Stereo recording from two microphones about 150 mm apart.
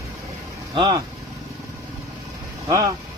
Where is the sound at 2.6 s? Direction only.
25° right (ahead or behind).